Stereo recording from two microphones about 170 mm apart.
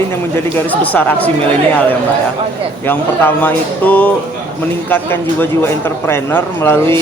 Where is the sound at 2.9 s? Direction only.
10° left (ahead or behind).